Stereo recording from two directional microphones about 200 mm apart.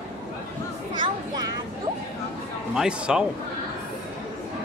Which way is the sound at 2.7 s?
5° right (ahead or behind).